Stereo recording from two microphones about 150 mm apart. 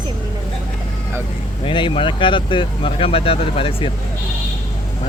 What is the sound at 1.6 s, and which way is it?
Speech, 35° left (ahead or behind).